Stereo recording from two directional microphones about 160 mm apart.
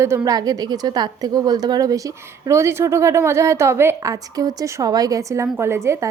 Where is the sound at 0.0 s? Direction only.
20° right (ahead or behind).